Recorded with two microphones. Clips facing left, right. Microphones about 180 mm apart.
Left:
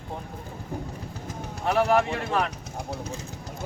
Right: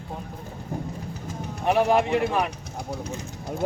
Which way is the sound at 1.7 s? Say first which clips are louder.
Right 2 dB; 15° right (ahead or behind).